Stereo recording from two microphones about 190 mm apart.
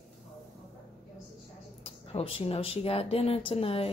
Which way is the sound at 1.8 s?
30° left (ahead or behind).